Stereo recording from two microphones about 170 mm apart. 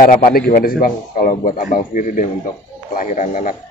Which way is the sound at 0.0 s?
55° left (ahead or behind).